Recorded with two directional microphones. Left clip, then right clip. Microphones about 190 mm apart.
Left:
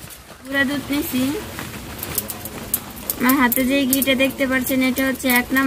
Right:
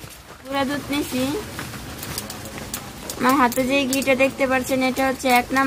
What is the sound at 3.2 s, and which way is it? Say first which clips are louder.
Speech: even; 35° right (ahead or behind).